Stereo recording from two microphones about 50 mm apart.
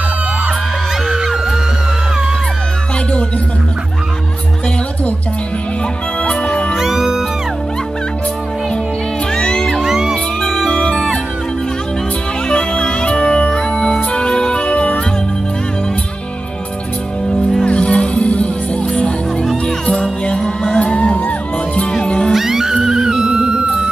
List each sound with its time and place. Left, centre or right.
1.0 s music: centre
6.2 s music: centre
6.8 s music: centre
9.4 s music: centre
9.8 s music: centre
10.4 s music: centre
12.4 s music: centre
13.5 s organ: centre
17.6 s music: left
22.3 s music: centre